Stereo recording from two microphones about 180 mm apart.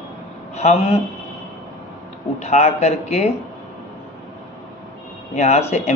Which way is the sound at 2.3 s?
40° left (ahead or behind).